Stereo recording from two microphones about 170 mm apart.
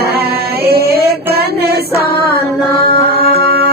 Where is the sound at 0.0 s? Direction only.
65° right (ahead or behind).